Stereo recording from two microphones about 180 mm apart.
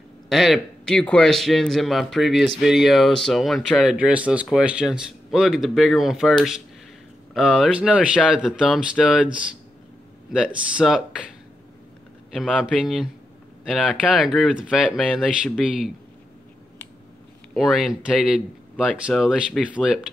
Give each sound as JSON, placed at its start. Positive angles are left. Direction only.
{"t": 0.3, "sound": "speech", "side_deg": 0}
{"t": 10.3, "sound": "speech", "side_deg": -5}
{"t": 12.3, "sound": "speech", "side_deg": 0}
{"t": 17.6, "sound": "speech", "side_deg": 0}